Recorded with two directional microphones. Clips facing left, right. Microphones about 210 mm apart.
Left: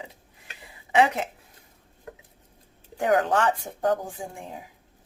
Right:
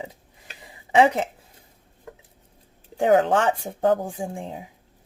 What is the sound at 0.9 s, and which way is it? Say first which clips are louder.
Speech: right 4 dB; 35° right (ahead or behind).